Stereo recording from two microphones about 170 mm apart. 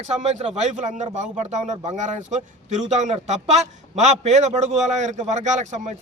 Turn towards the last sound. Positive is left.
turn(degrees=-45)  # may be behind; listen again after turning